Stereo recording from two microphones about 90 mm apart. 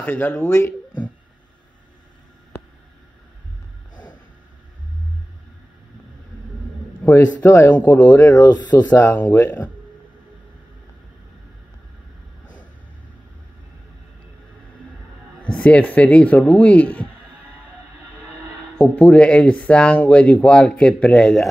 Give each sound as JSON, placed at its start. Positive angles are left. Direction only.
{"t": 0.0, "sound": "a man's voice", "side_deg": 20}
{"t": 7.0, "sound": "a man's voice", "side_deg": 30}
{"t": 7.7, "sound": "speech", "side_deg": 20}
{"t": 8.2, "sound": "speech", "side_deg": 35}
{"t": 9.2, "sound": "a man's voice", "side_deg": 20}
{"t": 15.4, "sound": "speech", "side_deg": 15}
{"t": 18.8, "sound": "speech", "side_deg": 15}